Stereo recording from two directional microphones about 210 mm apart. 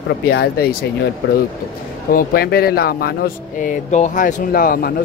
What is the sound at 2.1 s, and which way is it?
A man's voice, 45° left (ahead or behind).